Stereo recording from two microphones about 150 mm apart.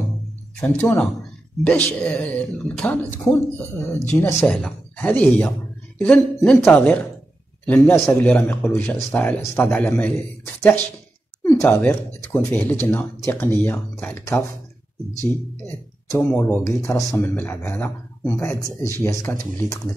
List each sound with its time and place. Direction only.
0.6 s a man's voice: 10° left (ahead or behind)
11.4 s speech: 20° left (ahead or behind)
15.6 s speech: 15° left (ahead or behind)